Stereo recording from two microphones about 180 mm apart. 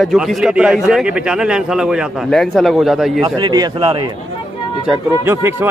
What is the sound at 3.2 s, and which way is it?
Speech, 25° right (ahead or behind).